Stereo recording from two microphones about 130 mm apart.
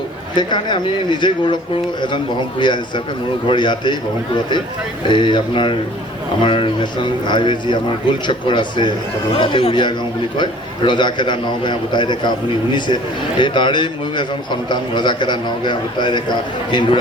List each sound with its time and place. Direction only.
0.3 s a man's voice: 35° left (ahead or behind)
5.0 s a man's voice: 35° left (ahead or behind)
13.4 s a man's voice: 35° left (ahead or behind)